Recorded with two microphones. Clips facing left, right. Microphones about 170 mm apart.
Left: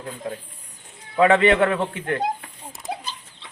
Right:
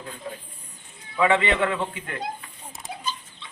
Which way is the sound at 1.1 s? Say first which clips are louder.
Left 5 dB; 50° left (ahead or behind).